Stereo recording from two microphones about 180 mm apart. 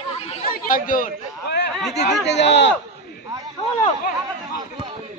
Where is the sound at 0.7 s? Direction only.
50° left (ahead or behind).